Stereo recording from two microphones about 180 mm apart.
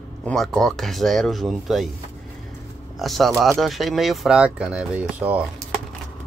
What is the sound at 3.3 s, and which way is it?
Speech, 20° right (ahead or behind).